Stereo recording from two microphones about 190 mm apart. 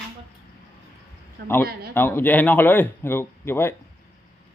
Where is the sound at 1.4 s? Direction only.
10° left (ahead or behind).